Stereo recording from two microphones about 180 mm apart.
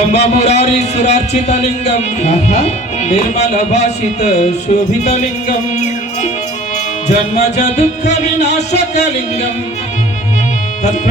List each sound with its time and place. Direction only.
0.1 s a man's voice: 35° left (ahead or behind)
7.1 s a man's voice: 40° left (ahead or behind)